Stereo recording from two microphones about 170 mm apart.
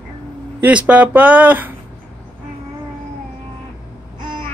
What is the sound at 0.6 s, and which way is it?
Speech, 5° right (ahead or behind).